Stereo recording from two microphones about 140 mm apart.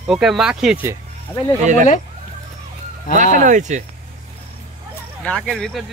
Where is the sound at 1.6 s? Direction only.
60° right (ahead or behind).